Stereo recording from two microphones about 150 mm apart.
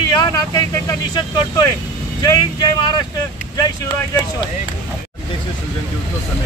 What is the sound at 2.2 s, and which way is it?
Speech, 30° left (ahead or behind).